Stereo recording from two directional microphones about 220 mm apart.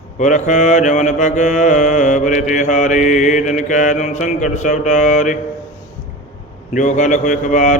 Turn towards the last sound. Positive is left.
turn(degrees=35)  # may be behind; listen again after turning